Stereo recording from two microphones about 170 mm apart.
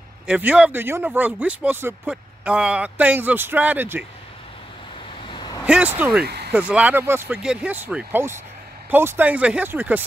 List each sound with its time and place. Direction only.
0.3 s speech: 5° right (ahead or behind)
5.3 s vehicle: 25° left (ahead or behind)
5.7 s speech: 10° right (ahead or behind)
6.2 s vehicle: 70° right (ahead or behind)
6.5 s speech: 10° right (ahead or behind)